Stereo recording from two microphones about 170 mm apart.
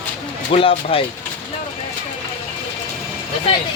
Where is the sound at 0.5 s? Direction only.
35° left (ahead or behind).